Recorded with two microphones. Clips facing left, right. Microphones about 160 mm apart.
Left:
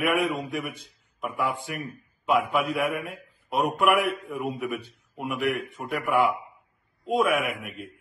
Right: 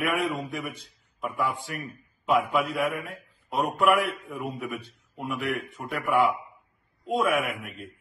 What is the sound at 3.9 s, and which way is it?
A man's voice, 15° left (ahead or behind).